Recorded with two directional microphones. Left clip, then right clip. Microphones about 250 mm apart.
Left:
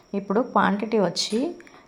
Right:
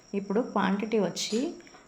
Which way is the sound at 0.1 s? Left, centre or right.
Centre.